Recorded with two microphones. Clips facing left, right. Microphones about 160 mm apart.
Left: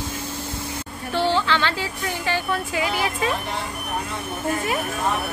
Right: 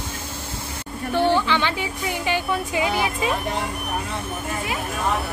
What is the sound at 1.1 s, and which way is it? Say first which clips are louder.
Speech: right 2 dB; 15° right (ahead or behind).